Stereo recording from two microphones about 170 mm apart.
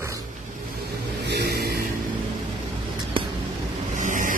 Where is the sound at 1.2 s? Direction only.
75° right (ahead or behind).